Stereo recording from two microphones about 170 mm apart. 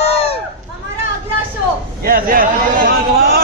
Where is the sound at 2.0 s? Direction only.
55° right (ahead or behind).